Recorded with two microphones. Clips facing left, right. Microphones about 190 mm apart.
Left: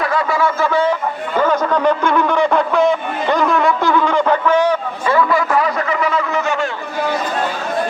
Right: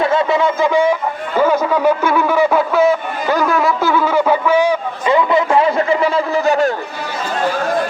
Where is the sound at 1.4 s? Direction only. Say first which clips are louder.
Right 2 dB; 10° right (ahead or behind); by 6.7 s 35° right (ahead or behind).